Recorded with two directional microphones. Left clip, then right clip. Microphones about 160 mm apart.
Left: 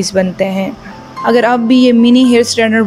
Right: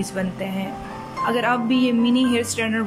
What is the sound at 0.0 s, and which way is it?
A woman's voice, 30° left (ahead or behind).